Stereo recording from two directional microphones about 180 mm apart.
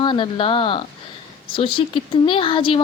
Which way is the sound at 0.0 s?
25° left (ahead or behind).